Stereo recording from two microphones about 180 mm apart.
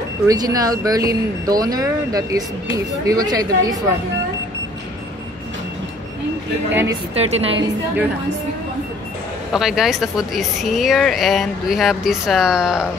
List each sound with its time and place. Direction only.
0.3 s speech: 20° right (ahead or behind)
6.7 s speech: 10° right (ahead or behind)
7.2 s a woman's voice: 30° right (ahead or behind)
9.5 s speech: 5° right (ahead or behind)